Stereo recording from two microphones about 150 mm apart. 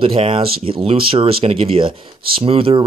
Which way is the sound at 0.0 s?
35° right (ahead or behind).